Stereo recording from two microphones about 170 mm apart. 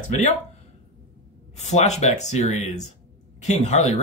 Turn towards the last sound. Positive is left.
turn(degrees=40)  # may be behind; listen again after turning